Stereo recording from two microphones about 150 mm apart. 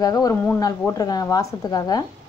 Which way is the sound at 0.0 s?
20° left (ahead or behind).